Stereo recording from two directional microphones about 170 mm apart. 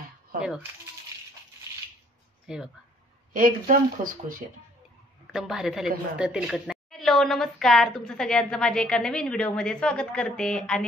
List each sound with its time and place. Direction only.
0.4 s speech: 5° right (ahead or behind)
2.4 s speech: 5° right (ahead or behind)
3.3 s speech: 50° right (ahead or behind)
5.2 s a woman's voice: 5° right (ahead or behind)